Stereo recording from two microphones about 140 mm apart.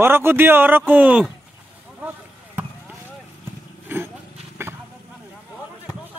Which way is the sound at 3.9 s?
15° right (ahead or behind).